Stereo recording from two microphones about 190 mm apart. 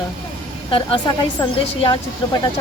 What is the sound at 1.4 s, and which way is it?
Speech, 25° left (ahead or behind).